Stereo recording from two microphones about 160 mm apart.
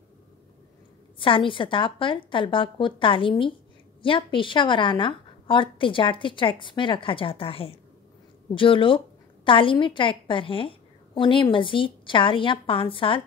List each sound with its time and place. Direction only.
1.2 s a woman's voice: 30° left (ahead or behind)